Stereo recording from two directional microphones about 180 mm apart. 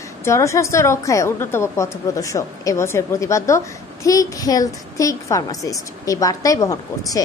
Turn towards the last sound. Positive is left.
turn(degrees=20)  # may be behind; listen again after turning